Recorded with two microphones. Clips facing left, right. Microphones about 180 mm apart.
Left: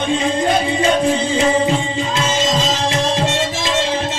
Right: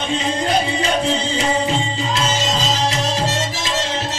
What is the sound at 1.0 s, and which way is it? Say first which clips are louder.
Music: left 4 dB; 50° left (ahead or behind).